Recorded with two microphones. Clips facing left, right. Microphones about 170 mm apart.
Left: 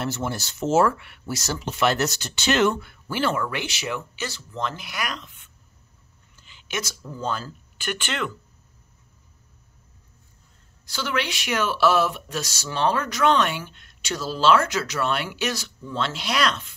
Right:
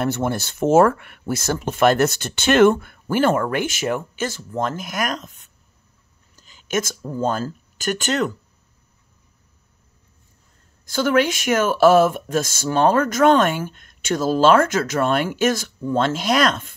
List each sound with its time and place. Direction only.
0.0 s speech: 55° right (ahead or behind)
10.9 s speech: 50° right (ahead or behind)